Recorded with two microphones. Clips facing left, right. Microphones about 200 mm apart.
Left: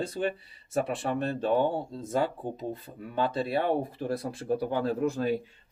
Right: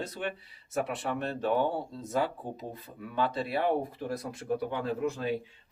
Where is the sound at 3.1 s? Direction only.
25° left (ahead or behind).